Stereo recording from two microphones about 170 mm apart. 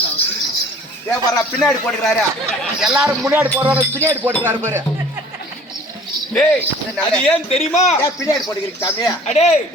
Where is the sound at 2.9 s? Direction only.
5° right (ahead or behind).